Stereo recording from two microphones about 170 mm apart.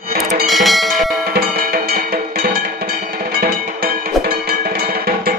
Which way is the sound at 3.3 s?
65° right (ahead or behind).